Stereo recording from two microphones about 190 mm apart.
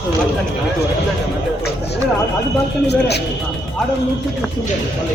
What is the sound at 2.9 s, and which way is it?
Speech, 60° left (ahead or behind).